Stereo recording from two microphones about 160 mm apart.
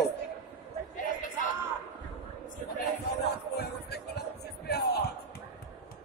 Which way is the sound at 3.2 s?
90° left.